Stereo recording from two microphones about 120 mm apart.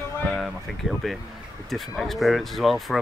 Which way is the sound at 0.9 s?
Centre (ahead or behind).